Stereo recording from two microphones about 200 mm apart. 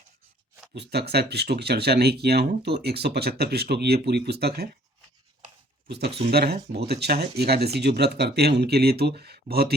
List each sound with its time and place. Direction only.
0.7 s speech: 55° right (ahead or behind)
5.9 s speech: 55° right (ahead or behind)